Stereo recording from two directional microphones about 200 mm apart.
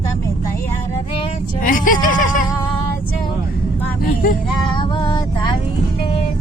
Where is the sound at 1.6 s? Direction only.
40° left (ahead or behind).